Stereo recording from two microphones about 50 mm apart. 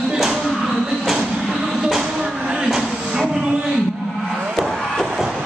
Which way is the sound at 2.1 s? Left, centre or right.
Centre.